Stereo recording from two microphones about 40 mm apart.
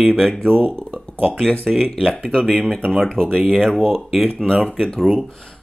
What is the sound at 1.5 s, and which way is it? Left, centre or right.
Speech, centre.